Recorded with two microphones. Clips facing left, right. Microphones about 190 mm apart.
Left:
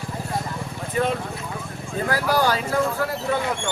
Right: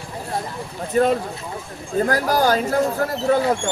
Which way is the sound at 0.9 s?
40° right (ahead or behind).